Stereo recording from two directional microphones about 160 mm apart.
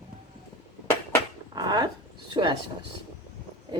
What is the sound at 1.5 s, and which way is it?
Speech, 25° right (ahead or behind).